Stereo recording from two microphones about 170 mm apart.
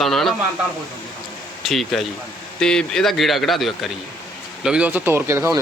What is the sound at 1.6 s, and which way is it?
A man's voice, centre (ahead or behind).